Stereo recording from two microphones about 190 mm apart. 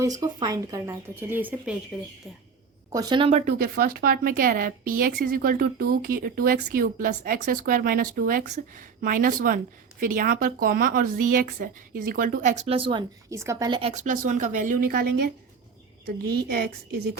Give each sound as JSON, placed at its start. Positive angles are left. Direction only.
{"t": 0.0, "sound": "a woman's voice", "side_deg": -20}
{"t": 2.9, "sound": "a woman's voice", "side_deg": -20}
{"t": 3.6, "sound": "speech", "side_deg": -50}
{"t": 13.9, "sound": "a woman's voice", "side_deg": -40}